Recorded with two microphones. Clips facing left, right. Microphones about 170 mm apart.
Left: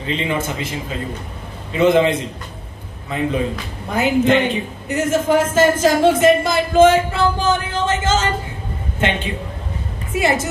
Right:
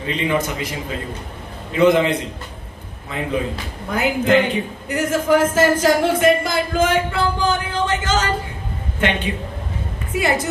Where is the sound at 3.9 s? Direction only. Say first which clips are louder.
Left 1 dB; 25° left (ahead or behind).